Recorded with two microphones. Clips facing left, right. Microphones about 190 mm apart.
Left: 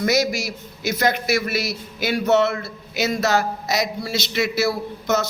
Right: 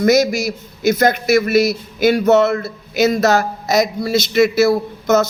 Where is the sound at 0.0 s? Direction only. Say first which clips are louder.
Right 7 dB; 45° right (ahead or behind).